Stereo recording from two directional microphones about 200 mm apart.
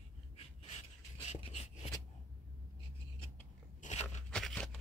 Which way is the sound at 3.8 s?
35° left (ahead or behind).